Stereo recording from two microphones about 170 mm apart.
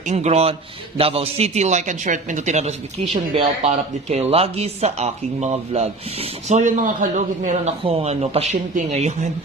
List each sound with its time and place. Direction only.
0.1 s a man's voice: 40° right (ahead or behind)
6.5 s a man's voice: 50° right (ahead or behind)